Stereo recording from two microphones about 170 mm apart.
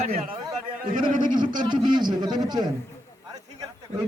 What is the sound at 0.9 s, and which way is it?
Speech, 50° right (ahead or behind).